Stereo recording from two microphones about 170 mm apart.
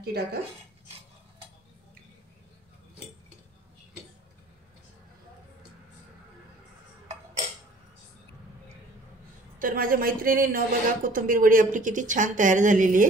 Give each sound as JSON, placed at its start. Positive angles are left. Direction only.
{"t": 0.0, "sound": "speech", "side_deg": -65}
{"t": 9.6, "sound": "a woman's voice", "side_deg": -55}